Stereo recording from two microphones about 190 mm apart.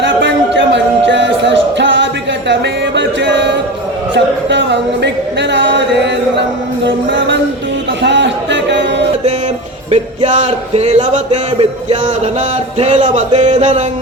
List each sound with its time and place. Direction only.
0.0 s music: 70° right (ahead or behind)
4.1 s speech: 70° right (ahead or behind)
6.8 s music: 70° right (ahead or behind)
8.0 s a sound: 70° right (ahead or behind)
9.9 s music: 35° right (ahead or behind)
13.3 s a sound: 25° right (ahead or behind)